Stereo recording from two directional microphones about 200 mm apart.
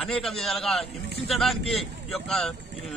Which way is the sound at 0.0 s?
Centre (ahead or behind).